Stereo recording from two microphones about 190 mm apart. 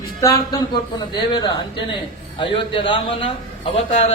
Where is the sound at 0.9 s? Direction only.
20° left (ahead or behind).